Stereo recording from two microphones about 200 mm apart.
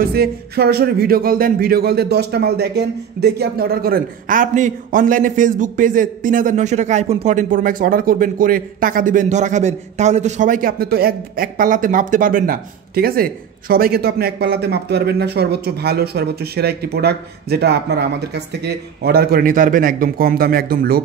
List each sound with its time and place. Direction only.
0.0 s speech: 50° right (ahead or behind)